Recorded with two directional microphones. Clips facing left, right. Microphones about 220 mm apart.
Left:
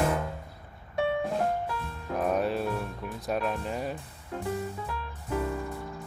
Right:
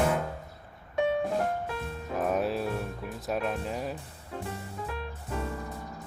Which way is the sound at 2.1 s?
Centre (ahead or behind).